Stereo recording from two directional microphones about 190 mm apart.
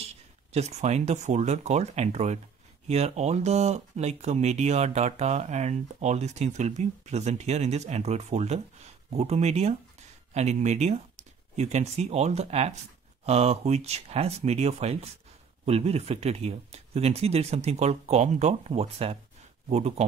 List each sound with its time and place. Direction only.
0.0 s speech: 35° right (ahead or behind)